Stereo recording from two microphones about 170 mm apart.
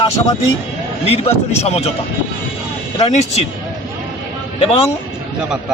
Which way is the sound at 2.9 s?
40° left (ahead or behind).